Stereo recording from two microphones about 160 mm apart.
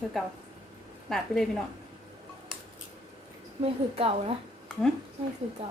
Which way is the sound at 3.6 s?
35° right (ahead or behind).